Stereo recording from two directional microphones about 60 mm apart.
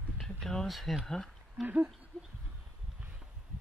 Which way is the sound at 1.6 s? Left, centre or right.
Right.